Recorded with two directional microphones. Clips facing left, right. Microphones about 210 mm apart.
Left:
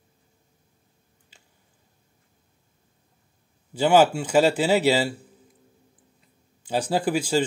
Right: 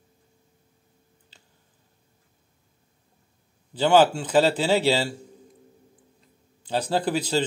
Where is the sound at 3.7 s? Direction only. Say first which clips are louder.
Even; 10° left (ahead or behind).